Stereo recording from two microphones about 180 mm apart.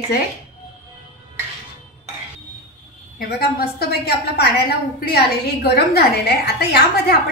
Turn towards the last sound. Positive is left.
turn(degrees=65)  # may be behind; listen again after turning